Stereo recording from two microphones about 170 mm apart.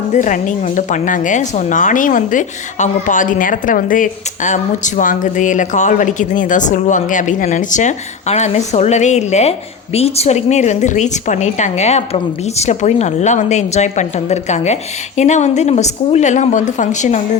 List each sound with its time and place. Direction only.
0.1 s speech: 45° left (ahead or behind)